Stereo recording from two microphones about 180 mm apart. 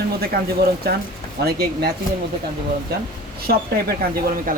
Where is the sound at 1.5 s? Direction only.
60° right (ahead or behind).